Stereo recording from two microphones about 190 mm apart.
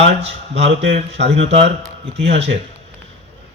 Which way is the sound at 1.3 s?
30° right (ahead or behind).